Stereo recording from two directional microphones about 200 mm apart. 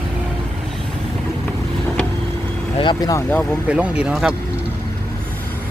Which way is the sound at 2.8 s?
20° left (ahead or behind).